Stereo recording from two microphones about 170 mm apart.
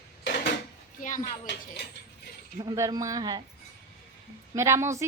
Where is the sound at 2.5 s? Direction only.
20° right (ahead or behind).